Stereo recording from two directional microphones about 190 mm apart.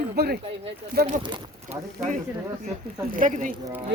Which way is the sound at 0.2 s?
60° right (ahead or behind).